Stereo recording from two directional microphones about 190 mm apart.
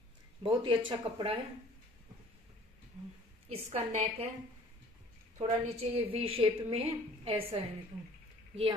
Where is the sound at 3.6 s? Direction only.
35° right (ahead or behind).